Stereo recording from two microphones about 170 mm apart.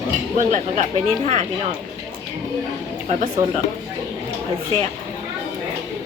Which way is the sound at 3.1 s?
40° right (ahead or behind).